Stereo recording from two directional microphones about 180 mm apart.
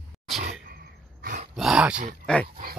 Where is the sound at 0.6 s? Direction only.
55° right (ahead or behind).